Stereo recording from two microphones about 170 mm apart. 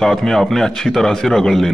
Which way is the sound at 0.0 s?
Centre (ahead or behind).